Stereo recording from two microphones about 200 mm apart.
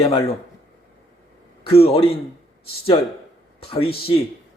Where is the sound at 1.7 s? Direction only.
30° left (ahead or behind).